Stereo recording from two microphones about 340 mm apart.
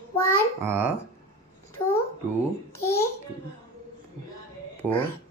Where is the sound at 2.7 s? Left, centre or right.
Centre.